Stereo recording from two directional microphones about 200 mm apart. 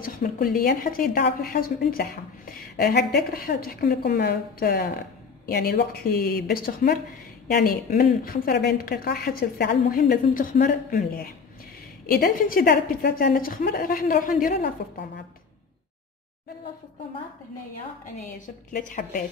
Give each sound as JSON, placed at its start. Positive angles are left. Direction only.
{"t": 0.0, "sound": "a woman's voice", "side_deg": 45}
{"t": 18.2, "sound": "a woman's voice", "side_deg": 40}